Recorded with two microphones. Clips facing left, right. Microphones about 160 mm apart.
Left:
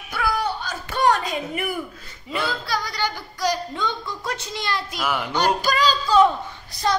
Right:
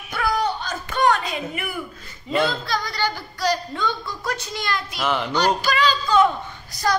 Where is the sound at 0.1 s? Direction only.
5° left (ahead or behind).